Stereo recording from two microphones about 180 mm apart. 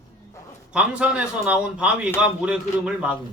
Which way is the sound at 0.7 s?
5° right (ahead or behind).